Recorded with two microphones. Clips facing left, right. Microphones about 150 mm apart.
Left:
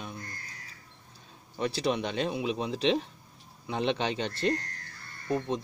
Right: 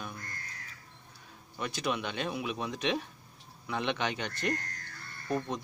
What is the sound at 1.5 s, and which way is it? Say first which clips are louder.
Speech: left 5 dB; 35° left (ahead or behind).